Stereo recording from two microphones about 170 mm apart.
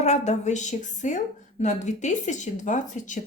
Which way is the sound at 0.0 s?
40° left (ahead or behind).